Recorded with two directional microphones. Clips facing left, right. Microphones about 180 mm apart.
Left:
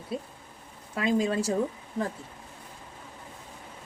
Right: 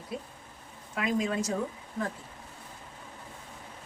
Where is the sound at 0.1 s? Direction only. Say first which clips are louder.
Left 4 dB; 30° left (ahead or behind).